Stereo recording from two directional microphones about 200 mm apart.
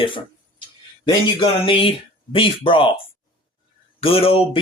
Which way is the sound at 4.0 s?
30° left (ahead or behind).